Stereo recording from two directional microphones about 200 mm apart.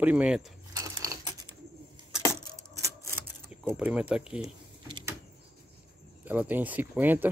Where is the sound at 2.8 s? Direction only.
15° right (ahead or behind).